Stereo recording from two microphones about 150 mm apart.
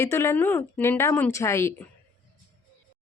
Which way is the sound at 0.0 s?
15° left (ahead or behind).